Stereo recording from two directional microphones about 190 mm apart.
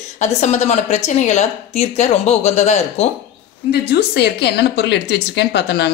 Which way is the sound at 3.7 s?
60° left (ahead or behind).